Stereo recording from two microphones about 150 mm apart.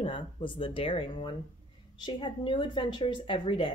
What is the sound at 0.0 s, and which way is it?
A woman's voice, 35° left (ahead or behind).